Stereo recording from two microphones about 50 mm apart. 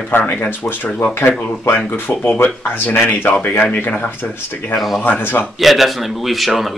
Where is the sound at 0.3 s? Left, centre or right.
Left.